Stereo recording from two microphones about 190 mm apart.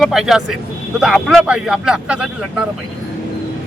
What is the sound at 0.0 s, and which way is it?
Speech, centre (ahead or behind).